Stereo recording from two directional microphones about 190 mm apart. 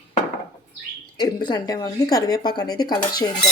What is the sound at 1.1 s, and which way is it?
A woman's voice, 20° left (ahead or behind).